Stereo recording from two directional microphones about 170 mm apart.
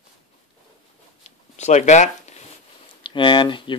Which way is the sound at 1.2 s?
40° left (ahead or behind).